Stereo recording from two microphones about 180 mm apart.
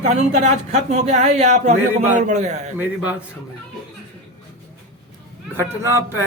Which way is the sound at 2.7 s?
10° right (ahead or behind).